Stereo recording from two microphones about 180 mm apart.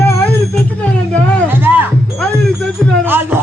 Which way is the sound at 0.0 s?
15° left (ahead or behind).